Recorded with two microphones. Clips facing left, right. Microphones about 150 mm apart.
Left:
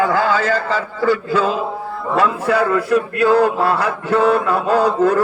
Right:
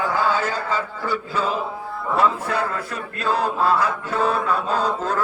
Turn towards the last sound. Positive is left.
turn(degrees=75)  # may be behind; listen again after turning